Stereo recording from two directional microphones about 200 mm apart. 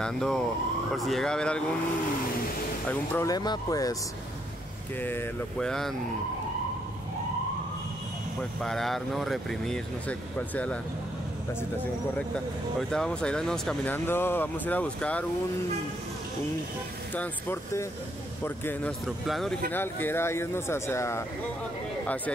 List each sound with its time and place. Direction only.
0.0 s speech: 5° left (ahead or behind)
2.9 s speech: 15° left (ahead or behind)
5.0 s speech: 5° left (ahead or behind)
8.4 s speech: centre (ahead or behind)
12.7 s speech: 5° left (ahead or behind)
17.1 s speech: 10° left (ahead or behind)
19.7 s speech: 10° left (ahead or behind)